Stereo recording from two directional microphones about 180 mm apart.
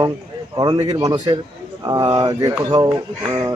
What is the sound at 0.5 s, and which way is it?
A man's voice, 25° right (ahead or behind).